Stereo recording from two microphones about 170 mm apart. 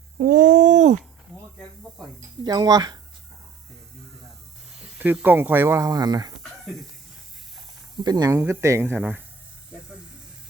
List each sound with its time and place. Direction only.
0.2 s a sound: 50° right (ahead or behind)
2.4 s speech: 25° right (ahead or behind)
4.9 s speech: 10° right (ahead or behind)
8.0 s speech: 25° right (ahead or behind)